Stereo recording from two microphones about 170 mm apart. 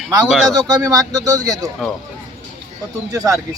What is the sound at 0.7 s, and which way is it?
Speech, 20° right (ahead or behind).